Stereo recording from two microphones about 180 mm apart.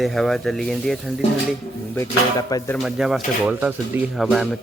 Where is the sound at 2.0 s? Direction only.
20° left (ahead or behind).